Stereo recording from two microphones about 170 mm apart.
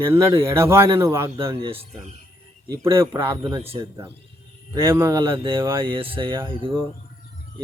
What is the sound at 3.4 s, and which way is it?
Speech, 30° right (ahead or behind).